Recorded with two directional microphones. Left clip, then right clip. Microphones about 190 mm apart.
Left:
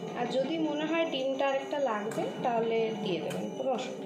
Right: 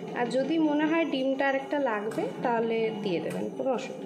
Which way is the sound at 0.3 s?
50° right (ahead or behind).